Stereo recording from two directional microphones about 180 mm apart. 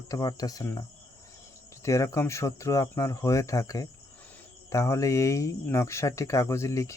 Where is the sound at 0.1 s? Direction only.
20° left (ahead or behind).